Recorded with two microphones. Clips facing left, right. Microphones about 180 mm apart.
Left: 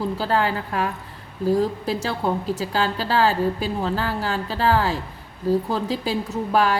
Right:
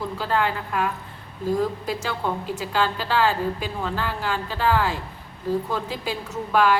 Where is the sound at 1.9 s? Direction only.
35° left (ahead or behind).